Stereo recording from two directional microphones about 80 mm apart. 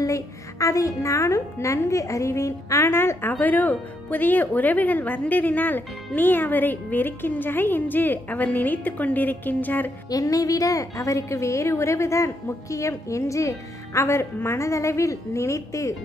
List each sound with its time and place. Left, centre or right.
0.0 s speech: left
10.0 s a woman's voice: left